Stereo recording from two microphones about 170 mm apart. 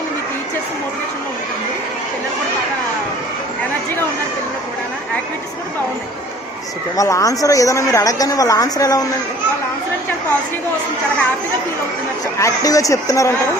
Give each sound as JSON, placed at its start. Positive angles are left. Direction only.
{"t": 6.9, "sound": "a woman's voice", "side_deg": 20}
{"t": 12.4, "sound": "a woman's voice", "side_deg": 20}